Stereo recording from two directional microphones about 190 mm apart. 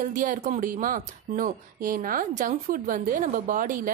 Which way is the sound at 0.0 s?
45° right (ahead or behind).